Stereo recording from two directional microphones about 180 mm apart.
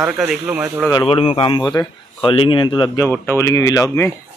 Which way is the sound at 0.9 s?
30° left (ahead or behind).